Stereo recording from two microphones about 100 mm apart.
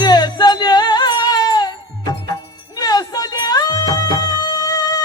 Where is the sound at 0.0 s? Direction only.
45° left (ahead or behind).